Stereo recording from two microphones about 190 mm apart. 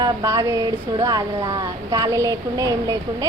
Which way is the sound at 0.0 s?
20° right (ahead or behind).